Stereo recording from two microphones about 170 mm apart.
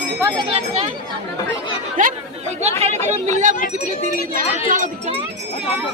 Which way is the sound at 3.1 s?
45° right (ahead or behind).